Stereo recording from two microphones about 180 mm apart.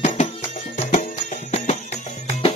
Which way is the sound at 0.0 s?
40° left (ahead or behind).